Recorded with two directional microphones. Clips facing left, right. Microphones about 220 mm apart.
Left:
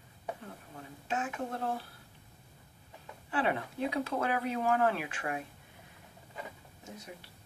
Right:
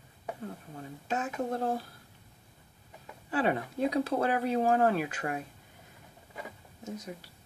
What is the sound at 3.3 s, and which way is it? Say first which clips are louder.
Speech: right 3 dB; 40° right (ahead or behind).